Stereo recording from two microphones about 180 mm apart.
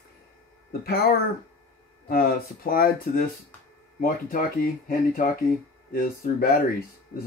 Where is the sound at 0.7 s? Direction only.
60° left (ahead or behind).